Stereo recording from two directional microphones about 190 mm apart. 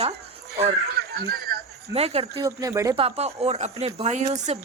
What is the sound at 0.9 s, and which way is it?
Snicker, 55° right (ahead or behind).